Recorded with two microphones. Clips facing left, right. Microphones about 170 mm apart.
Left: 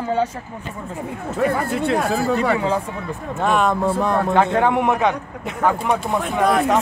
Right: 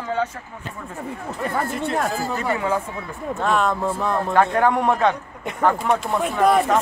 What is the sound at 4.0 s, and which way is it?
A man's voice, 20° left (ahead or behind).